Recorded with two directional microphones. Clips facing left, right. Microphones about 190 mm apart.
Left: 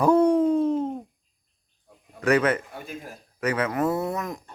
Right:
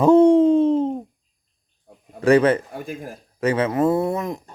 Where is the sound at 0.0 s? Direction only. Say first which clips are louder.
Right 6 dB; 25° right (ahead or behind).